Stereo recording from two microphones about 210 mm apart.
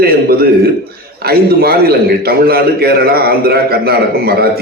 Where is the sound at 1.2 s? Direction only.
50° right (ahead or behind).